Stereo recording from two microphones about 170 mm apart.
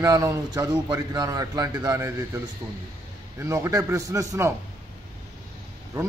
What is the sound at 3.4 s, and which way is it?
A man's voice, 15° right (ahead or behind).